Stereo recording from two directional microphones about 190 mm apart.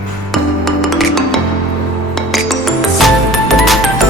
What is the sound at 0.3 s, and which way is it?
Music, centre (ahead or behind).